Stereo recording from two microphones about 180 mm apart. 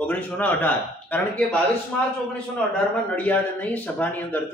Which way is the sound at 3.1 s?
10° left (ahead or behind).